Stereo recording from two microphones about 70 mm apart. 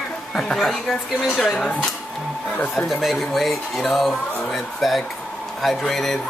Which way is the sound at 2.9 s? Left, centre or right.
Centre.